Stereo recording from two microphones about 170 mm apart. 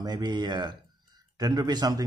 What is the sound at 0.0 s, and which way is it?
Speech, 25° right (ahead or behind).